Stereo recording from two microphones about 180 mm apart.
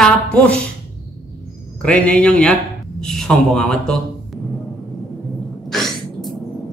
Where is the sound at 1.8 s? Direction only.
5° left (ahead or behind).